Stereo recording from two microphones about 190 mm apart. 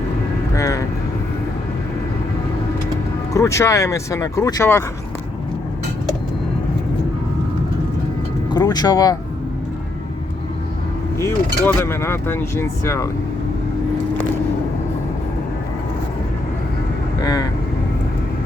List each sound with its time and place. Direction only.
0.5 s vehicle: 15° left (ahead or behind)
3.3 s speech: 15° left (ahead or behind)
8.4 s vehicle: 20° left (ahead or behind)
11.2 s speech: 15° left (ahead or behind)
17.2 s vehicle: 20° left (ahead or behind)